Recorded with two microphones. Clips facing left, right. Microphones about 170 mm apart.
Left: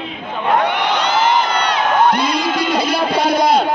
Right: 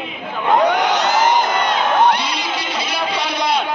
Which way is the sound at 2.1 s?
50° left (ahead or behind).